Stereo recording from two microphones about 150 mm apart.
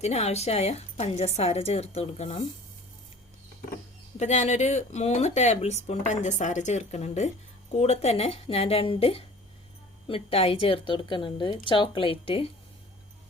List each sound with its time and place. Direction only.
0.0 s speech: 45° left (ahead or behind)
4.2 s a woman's voice: 50° left (ahead or behind)